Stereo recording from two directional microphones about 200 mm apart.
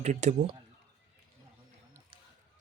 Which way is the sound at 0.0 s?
35° right (ahead or behind).